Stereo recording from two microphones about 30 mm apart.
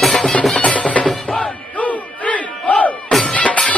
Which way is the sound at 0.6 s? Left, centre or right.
Left.